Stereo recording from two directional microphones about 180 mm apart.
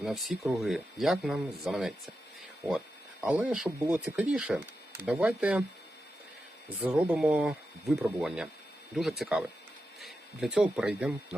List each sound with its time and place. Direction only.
0.0 s speech: centre (ahead or behind)
3.2 s speech: 5° right (ahead or behind)
6.8 s speech: 5° right (ahead or behind)